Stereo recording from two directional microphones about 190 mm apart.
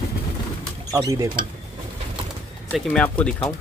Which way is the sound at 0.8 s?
20° right (ahead or behind).